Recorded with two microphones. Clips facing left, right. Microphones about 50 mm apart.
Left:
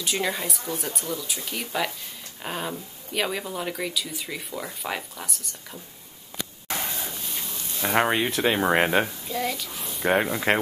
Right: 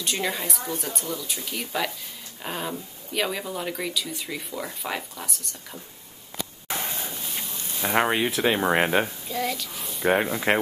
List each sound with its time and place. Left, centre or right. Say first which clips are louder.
0.0 s speech: left 1 dB; centre
7.1 s a sound: even; centre
7.8 s speech: even; centre